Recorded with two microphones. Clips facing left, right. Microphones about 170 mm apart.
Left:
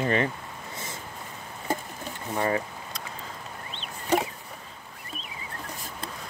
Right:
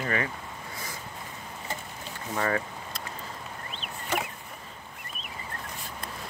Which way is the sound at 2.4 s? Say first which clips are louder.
Left 2 dB; 20° left (ahead or behind).